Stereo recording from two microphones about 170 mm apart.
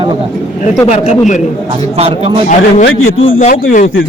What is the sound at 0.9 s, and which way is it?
Speech, 45° left (ahead or behind).